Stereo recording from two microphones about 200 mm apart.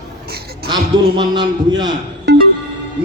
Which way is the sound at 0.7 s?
20° right (ahead or behind).